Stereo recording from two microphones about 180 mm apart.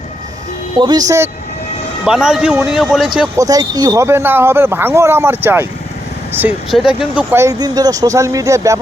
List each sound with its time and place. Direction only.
0.8 s speech: 20° right (ahead or behind)
2.0 s a man's voice: 5° right (ahead or behind)
3.3 s speech: 20° right (ahead or behind)